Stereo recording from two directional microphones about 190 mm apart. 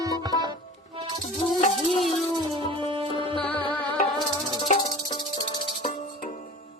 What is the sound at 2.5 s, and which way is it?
Music, 30° right (ahead or behind).